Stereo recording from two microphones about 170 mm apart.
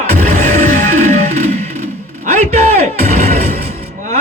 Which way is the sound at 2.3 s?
40° right (ahead or behind).